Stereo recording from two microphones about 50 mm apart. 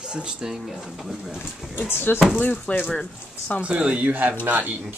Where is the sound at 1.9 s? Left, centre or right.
Left.